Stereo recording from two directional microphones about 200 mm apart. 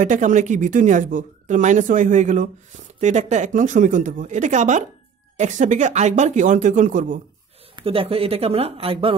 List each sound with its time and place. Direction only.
0.0 s speech: 40° right (ahead or behind)
7.7 s speech: 25° right (ahead or behind)